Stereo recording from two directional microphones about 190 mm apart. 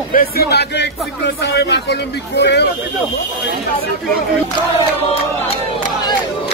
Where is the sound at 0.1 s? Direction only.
50° left (ahead or behind).